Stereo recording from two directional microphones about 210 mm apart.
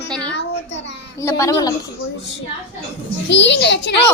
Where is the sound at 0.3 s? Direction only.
55° left (ahead or behind).